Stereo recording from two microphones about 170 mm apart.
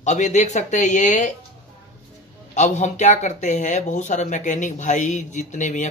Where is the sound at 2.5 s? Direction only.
45° left (ahead or behind).